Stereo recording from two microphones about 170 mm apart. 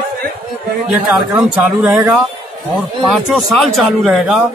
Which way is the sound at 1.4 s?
5° right (ahead or behind).